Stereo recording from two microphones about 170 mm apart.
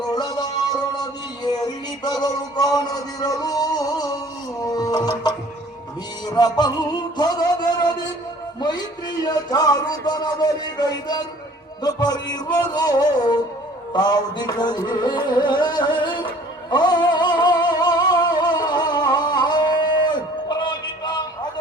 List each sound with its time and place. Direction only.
0.1 s music: 25° left (ahead or behind)
6.2 s speech: 25° left (ahead or behind)
9.2 s music: 25° left (ahead or behind)